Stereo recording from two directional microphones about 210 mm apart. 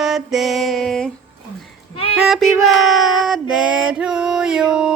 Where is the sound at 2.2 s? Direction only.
Centre (ahead or behind).